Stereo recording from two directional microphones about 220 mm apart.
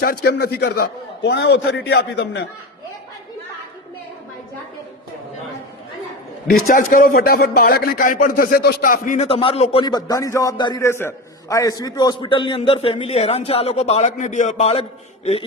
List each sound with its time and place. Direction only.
0.0 s a man's voice: 45° left (ahead or behind)
6.5 s speech: 40° left (ahead or behind)